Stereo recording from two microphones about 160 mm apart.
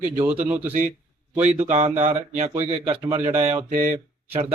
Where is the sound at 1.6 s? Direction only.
40° right (ahead or behind).